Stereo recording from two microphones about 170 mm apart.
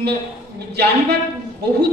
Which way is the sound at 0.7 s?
75° right (ahead or behind).